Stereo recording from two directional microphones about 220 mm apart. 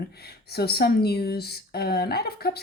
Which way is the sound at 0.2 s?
45° left (ahead or behind).